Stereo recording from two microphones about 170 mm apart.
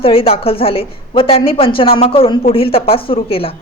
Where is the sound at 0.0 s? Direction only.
35° left (ahead or behind).